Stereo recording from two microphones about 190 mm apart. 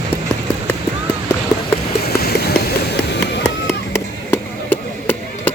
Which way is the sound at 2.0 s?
55° left (ahead or behind).